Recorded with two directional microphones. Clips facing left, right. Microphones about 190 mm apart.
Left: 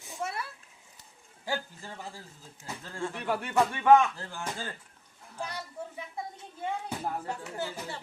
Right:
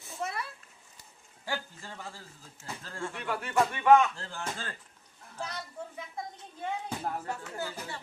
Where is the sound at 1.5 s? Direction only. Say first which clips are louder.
Left 2 dB; 15° left (ahead or behind).